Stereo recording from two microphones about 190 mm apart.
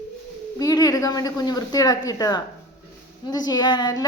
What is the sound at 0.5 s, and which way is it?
A woman's voice, 20° left (ahead or behind).